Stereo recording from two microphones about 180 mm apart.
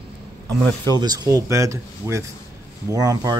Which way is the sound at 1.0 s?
20° right (ahead or behind).